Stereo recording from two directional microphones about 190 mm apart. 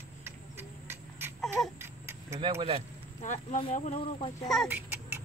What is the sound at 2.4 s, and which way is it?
Speech, 30° right (ahead or behind).